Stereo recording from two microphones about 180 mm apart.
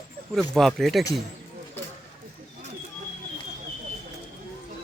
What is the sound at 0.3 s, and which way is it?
Speech, centre (ahead or behind).